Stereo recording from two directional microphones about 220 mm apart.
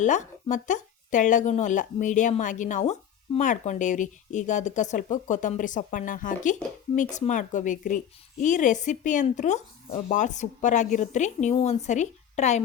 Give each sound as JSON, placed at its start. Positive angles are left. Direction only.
{"t": 0.0, "sound": "a woman's voice", "side_deg": 35}